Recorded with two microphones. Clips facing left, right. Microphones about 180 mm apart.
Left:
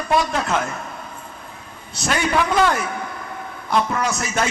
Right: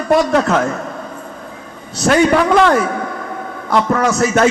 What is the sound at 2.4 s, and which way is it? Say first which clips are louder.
Speech: right 6 dB; 70° right (ahead or behind).